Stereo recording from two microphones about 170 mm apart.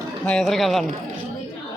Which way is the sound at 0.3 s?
Centre (ahead or behind).